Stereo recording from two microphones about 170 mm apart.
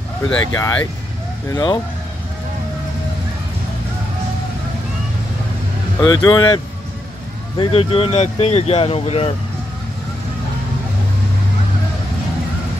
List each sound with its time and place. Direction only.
0.3 s speech: 20° left (ahead or behind)
5.9 s speech: 25° left (ahead or behind)